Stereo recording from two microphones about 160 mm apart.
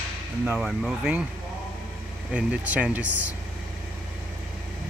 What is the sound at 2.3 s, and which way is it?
Speech, 10° right (ahead or behind).